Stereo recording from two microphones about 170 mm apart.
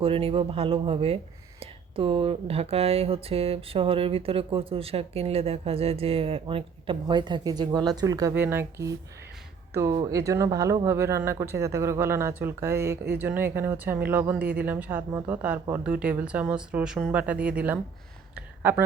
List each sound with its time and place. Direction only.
0.0 s speech: 35° right (ahead or behind); by 17.7 s 10° right (ahead or behind)